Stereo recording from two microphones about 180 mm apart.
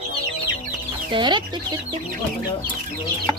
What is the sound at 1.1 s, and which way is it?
Speech, 25° right (ahead or behind).